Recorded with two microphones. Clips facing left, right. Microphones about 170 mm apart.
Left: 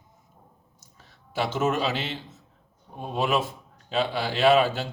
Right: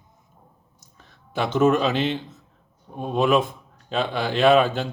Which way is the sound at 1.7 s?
50° right (ahead or behind).